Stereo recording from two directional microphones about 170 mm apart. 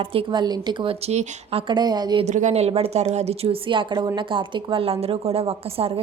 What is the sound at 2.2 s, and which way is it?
A woman's voice, 45° right (ahead or behind).